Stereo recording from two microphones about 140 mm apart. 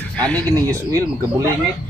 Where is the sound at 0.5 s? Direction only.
25° right (ahead or behind).